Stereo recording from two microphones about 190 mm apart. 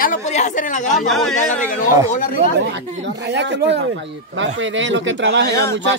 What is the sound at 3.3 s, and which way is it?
Speech, 65° right (ahead or behind).